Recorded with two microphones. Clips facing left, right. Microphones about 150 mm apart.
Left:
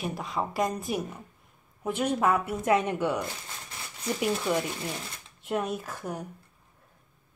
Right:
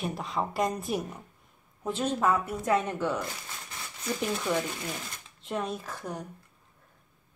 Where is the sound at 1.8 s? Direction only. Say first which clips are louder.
Left 1 dB; 15° left (ahead or behind).